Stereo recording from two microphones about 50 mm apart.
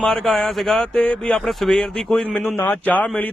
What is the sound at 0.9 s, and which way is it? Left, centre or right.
Speech, left.